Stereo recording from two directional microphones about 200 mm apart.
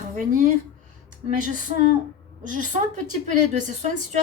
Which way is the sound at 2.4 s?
40° right (ahead or behind).